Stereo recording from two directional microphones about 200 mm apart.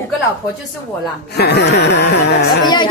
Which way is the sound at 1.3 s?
55° left (ahead or behind).